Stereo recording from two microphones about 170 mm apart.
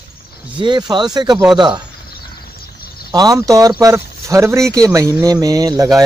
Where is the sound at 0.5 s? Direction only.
25° right (ahead or behind).